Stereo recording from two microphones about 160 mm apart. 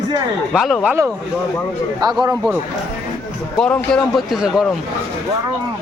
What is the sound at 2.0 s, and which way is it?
Speech, 25° right (ahead or behind).